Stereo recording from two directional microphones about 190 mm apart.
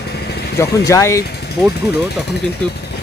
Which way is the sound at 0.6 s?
15° left (ahead or behind).